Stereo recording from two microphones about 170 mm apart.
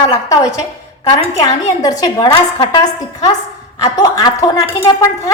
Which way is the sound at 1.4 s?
20° left (ahead or behind).